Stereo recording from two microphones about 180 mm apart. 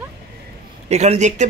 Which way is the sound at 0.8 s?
40° right (ahead or behind).